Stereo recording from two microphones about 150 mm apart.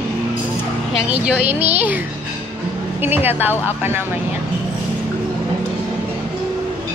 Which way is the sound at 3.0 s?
15° right (ahead or behind).